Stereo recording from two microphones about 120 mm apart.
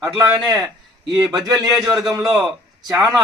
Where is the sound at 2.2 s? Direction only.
30° right (ahead or behind).